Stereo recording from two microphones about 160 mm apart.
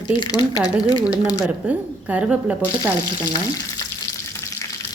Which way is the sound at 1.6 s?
10° right (ahead or behind).